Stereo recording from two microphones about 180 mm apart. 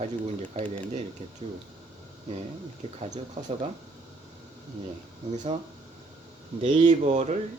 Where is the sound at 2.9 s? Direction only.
40° right (ahead or behind).